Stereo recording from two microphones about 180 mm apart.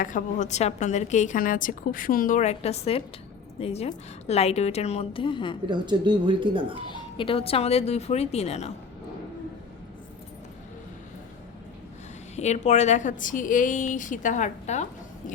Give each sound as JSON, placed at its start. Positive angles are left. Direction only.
{"t": 0.0, "sound": "a woman's voice", "side_deg": 45}
{"t": 5.6, "sound": "speech", "side_deg": -25}
{"t": 6.8, "sound": "a woman's voice", "side_deg": 25}
{"t": 12.4, "sound": "a woman's voice", "side_deg": 40}